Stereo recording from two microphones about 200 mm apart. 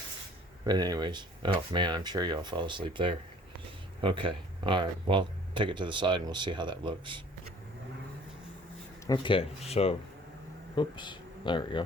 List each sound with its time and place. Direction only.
0.6 s speech: 20° right (ahead or behind)
9.0 s speech: 25° left (ahead or behind)